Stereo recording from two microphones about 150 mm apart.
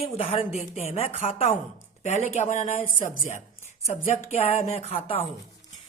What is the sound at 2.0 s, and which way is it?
Speech, 50° left (ahead or behind).